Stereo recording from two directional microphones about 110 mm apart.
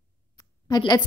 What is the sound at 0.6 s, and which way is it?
Speech, 40° left (ahead or behind).